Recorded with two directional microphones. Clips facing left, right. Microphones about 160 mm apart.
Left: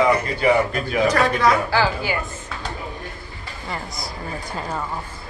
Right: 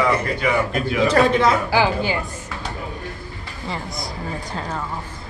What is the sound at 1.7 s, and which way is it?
Speech, 20° right (ahead or behind).